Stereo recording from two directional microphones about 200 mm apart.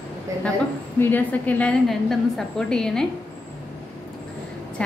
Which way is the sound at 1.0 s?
10° left (ahead or behind).